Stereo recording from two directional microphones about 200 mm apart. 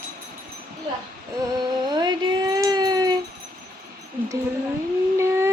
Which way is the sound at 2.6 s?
20° right (ahead or behind).